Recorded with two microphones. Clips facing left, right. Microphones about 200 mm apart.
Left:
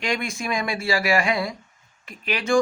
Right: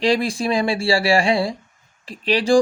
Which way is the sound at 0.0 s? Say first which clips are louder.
Right 8 dB; 30° right (ahead or behind).